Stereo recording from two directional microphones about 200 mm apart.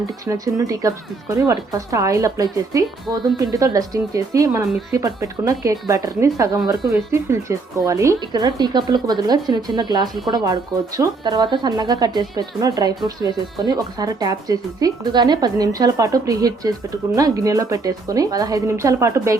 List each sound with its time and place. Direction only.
0.3 s speech: 15° right (ahead or behind)